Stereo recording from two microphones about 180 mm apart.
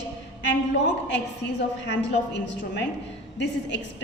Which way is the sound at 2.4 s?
75° left (ahead or behind).